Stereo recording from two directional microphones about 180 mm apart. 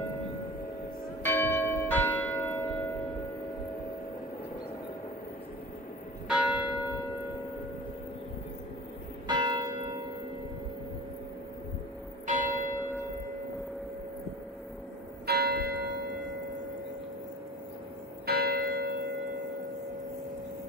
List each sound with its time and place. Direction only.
1.2 s church bell: 10° left (ahead or behind)
6.2 s church bell: 5° right (ahead or behind)
9.3 s church bell: 20° right (ahead or behind)
12.3 s church bell: 45° right (ahead or behind)
15.2 s church bell: 65° right (ahead or behind)
18.2 s church bell: 60° right (ahead or behind)